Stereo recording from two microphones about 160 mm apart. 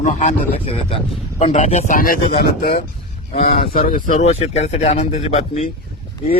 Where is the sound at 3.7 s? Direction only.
60° left (ahead or behind).